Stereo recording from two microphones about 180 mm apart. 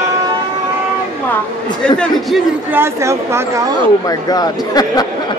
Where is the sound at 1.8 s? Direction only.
5° left (ahead or behind).